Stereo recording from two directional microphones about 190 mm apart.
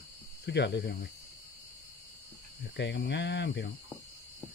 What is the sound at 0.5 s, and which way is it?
Speech, 65° left (ahead or behind).